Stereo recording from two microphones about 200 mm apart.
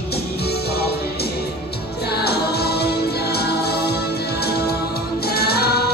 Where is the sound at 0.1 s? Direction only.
50° left (ahead or behind).